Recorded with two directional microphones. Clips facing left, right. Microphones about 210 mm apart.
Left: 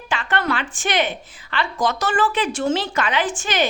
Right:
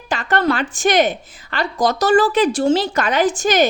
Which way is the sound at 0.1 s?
40° right (ahead or behind).